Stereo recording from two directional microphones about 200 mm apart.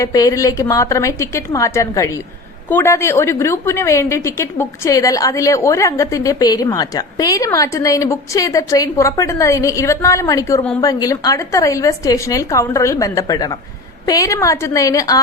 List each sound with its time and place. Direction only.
0.0 s a woman's voice: 15° left (ahead or behind)